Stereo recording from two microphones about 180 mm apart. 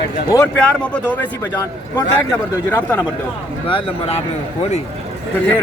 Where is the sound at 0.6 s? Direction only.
5° left (ahead or behind).